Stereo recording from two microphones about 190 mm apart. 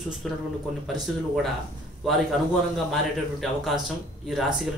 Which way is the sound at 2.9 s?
Centre (ahead or behind).